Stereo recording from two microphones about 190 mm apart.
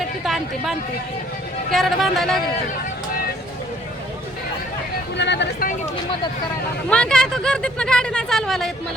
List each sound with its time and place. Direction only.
0.3 s speech: centre (ahead or behind)
1.7 s speech: centre (ahead or behind)
5.1 s a sound: 65° left (ahead or behind)
6.9 s speech: 5° left (ahead or behind)